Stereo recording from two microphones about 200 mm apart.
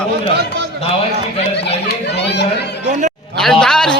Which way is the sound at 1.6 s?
60° left (ahead or behind).